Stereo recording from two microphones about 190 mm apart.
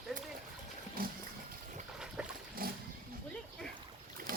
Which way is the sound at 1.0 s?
50° right (ahead or behind).